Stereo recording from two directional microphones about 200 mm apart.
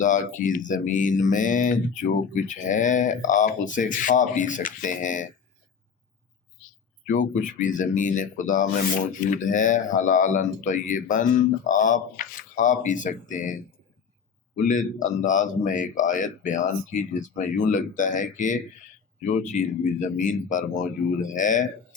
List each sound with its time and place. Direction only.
0.0 s speech: 40° left (ahead or behind)
7.1 s speech: 40° left (ahead or behind)
14.7 s speech: 40° left (ahead or behind)